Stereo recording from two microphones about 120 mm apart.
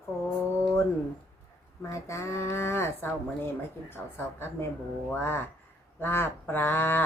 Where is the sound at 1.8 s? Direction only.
25° left (ahead or behind).